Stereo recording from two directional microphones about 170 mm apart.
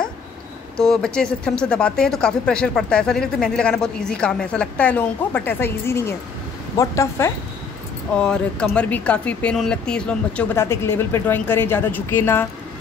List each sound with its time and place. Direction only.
0.7 s speech: 5° left (ahead or behind)
8.2 s speech: 5° left (ahead or behind)